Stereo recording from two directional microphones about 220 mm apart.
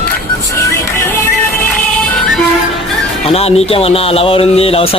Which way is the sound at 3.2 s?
25° left (ahead or behind).